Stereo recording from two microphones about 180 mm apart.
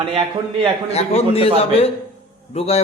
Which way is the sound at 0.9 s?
35° left (ahead or behind).